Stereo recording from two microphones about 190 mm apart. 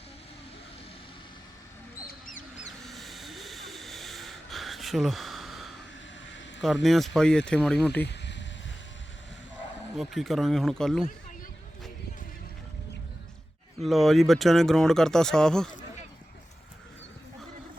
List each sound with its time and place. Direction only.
2.8 s snort: centre (ahead or behind)
6.8 s speech: centre (ahead or behind)
8.0 s a sound: 65° left (ahead or behind)
10.0 s speech: centre (ahead or behind)
13.8 s speech: centre (ahead or behind)